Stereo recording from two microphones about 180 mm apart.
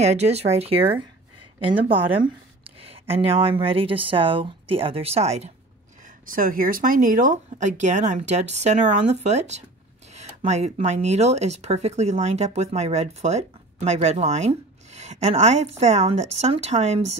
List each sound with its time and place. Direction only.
0.0 s speech: 35° right (ahead or behind)
6.0 s speech: 50° right (ahead or behind)